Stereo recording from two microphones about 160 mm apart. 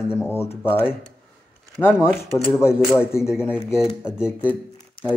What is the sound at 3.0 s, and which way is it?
Speech, 15° left (ahead or behind).